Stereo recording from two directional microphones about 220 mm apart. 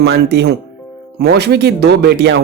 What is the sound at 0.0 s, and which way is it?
Speech, 50° right (ahead or behind).